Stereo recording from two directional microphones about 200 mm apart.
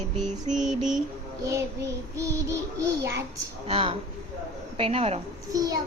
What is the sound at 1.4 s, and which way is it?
Child singing, 15° right (ahead or behind).